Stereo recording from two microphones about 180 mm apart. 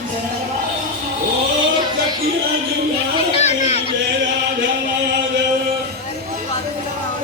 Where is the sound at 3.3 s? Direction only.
35° left (ahead or behind).